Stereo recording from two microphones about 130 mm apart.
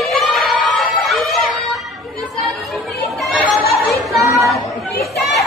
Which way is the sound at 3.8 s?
Centre (ahead or behind).